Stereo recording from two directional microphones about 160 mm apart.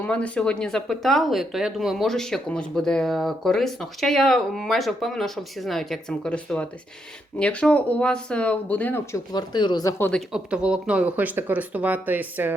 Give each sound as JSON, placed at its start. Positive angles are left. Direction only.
{"t": 0.0, "sound": "speech", "side_deg": 5}
{"t": 9.1, "sound": "speech", "side_deg": 25}
{"t": 10.0, "sound": "speech", "side_deg": 5}